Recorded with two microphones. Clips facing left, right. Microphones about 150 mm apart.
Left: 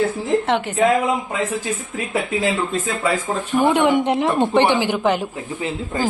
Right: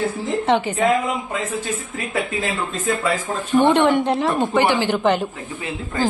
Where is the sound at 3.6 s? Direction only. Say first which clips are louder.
Right 1 dB; 5° left (ahead or behind).